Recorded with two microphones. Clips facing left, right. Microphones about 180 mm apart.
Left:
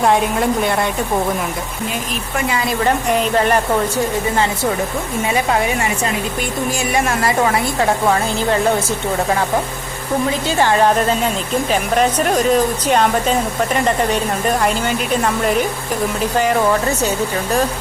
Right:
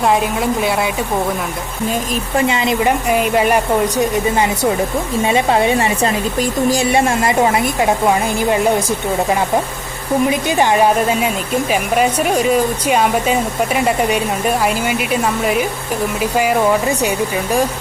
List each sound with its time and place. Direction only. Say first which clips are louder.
0.0 s a woman's voice: even; centre (ahead or behind)
2.3 s a woman's voice: right 4 dB; 20° right (ahead or behind)
3.1 s speech: right 1 dB; 10° right (ahead or behind)
5.2 s a woman's voice: right 3 dB; 25° right (ahead or behind)
10.2 s speech: right 1 dB; 15° right (ahead or behind)